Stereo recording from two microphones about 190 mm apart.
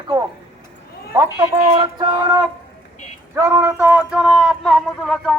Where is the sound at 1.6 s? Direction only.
25° right (ahead or behind).